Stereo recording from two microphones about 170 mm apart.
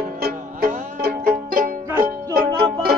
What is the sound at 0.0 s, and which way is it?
Music, 60° right (ahead or behind).